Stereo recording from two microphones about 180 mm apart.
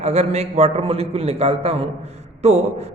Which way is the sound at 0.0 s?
35° right (ahead or behind).